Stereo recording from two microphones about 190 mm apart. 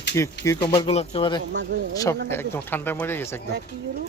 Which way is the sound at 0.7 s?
30° left (ahead or behind).